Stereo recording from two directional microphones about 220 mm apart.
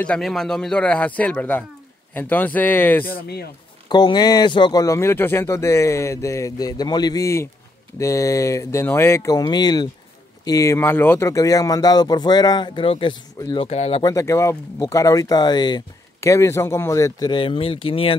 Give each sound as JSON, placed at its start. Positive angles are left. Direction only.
{"t": 0.0, "sound": "a man's voice", "side_deg": 5}
{"t": 3.1, "sound": "speech", "side_deg": 45}
{"t": 3.9, "sound": "speech", "side_deg": 20}